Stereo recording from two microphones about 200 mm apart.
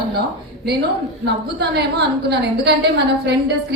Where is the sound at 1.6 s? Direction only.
55° right (ahead or behind).